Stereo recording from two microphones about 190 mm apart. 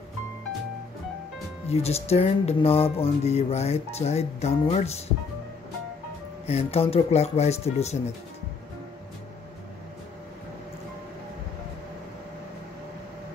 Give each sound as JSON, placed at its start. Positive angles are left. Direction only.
{"t": 1.7, "sound": "speech", "side_deg": 35}
{"t": 6.4, "sound": "speech", "side_deg": 35}